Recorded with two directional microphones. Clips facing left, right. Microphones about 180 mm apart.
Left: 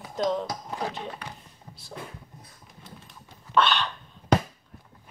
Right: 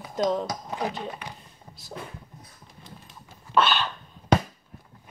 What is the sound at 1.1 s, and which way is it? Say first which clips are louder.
Speech: right 1 dB; 10° right (ahead or behind).